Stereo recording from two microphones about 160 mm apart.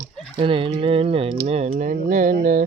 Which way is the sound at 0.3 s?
35° right (ahead or behind).